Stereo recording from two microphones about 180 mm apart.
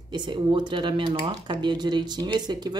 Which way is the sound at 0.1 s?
25° right (ahead or behind).